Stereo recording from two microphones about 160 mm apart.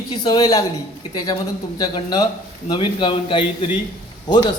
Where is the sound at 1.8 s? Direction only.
25° left (ahead or behind).